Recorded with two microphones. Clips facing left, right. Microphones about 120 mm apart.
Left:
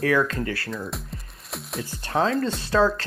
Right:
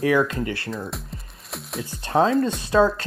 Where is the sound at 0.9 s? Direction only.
Centre (ahead or behind).